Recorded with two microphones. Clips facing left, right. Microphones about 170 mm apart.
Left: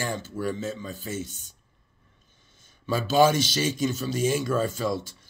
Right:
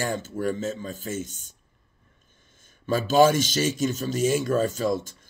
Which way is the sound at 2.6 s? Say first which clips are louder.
Right 2 dB; 50° right (ahead or behind).